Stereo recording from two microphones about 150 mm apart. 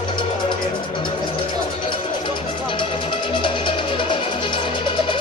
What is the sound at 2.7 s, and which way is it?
Music, 35° left (ahead or behind).